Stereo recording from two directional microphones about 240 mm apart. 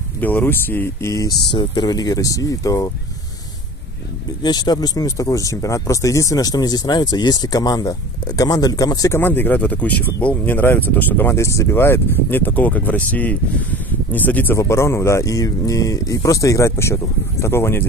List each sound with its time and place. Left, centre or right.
0.2 s speech: centre
4.4 s speech: centre